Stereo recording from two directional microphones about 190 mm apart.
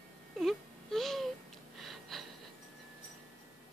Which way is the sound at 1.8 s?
Centre (ahead or behind).